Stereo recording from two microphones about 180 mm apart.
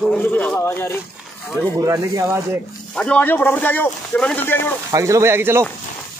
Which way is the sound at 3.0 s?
10° left (ahead or behind).